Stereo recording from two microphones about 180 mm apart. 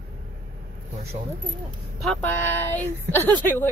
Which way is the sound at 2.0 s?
5° left (ahead or behind).